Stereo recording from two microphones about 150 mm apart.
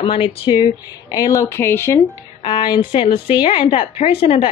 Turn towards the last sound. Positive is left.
turn(degrees=35)  # may be behind; listen again after turning